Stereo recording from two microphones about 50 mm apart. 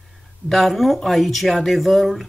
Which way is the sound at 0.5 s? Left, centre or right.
Centre.